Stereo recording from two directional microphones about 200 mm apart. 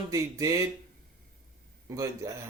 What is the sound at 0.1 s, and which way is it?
Speech, 15° right (ahead or behind).